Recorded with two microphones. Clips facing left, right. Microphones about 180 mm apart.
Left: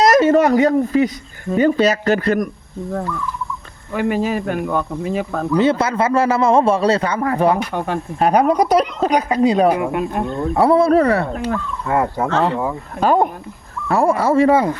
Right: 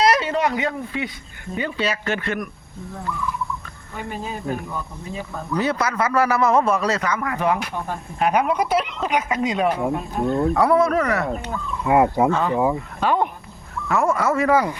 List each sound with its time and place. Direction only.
0.0 s a woman's voice: 45° left (ahead or behind)
3.9 s speech: 80° left
5.5 s a man's voice: 25° left (ahead or behind)
7.7 s speech: 75° left (ahead or behind)
8.2 s a woman's voice: 35° left (ahead or behind)
9.6 s speech: 75° left (ahead or behind)
10.5 s a woman's voice: 30° left (ahead or behind)
11.3 s speech: 90° left
11.9 s speech: 15° right (ahead or behind)
12.3 s speech: 80° left
13.0 s a woman's voice: 40° left (ahead or behind)